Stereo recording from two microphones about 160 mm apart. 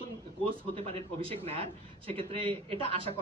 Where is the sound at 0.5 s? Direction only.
35° right (ahead or behind).